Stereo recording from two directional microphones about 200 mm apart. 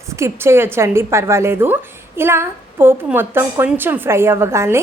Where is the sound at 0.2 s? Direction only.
10° right (ahead or behind).